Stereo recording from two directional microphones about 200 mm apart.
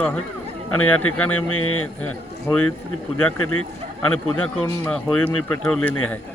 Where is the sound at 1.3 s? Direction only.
90° left.